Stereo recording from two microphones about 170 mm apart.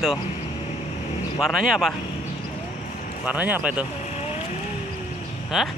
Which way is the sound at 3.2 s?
10° right (ahead or behind).